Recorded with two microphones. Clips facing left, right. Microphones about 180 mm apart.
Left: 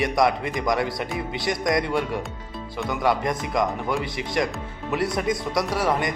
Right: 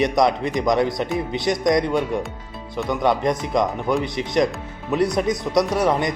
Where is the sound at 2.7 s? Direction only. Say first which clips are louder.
Right 3 dB; 20° right (ahead or behind).